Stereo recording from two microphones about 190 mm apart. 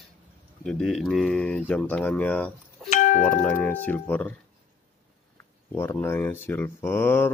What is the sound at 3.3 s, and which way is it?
Speech, 10° left (ahead or behind).